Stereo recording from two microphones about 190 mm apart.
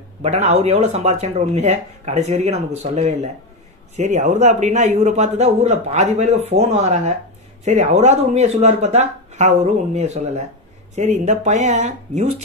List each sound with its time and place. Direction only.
0.2 s a man's voice: 35° right (ahead or behind)